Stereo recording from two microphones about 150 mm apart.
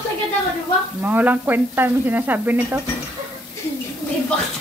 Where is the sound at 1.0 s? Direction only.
10° right (ahead or behind).